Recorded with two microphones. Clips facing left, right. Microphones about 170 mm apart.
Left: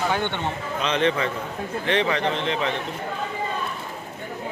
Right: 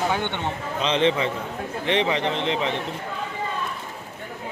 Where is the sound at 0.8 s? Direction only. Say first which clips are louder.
Right 1 dB; 25° right (ahead or behind).